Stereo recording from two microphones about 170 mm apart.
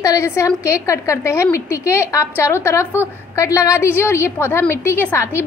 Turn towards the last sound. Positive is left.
turn(degrees=15)  # may be behind; listen again after turning